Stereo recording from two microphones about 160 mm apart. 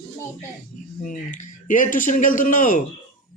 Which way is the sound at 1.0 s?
55° left (ahead or behind).